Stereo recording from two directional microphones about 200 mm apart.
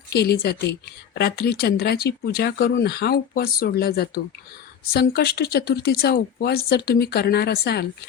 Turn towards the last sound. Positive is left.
turn(degrees=55)  # may be behind; listen again after turning